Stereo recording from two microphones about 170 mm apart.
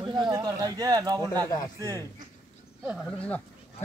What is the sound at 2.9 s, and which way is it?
Speech, centre (ahead or behind).